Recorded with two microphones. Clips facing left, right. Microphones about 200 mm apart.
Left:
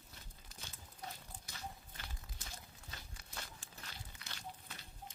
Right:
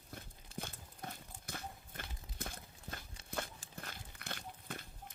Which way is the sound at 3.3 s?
55° right (ahead or behind).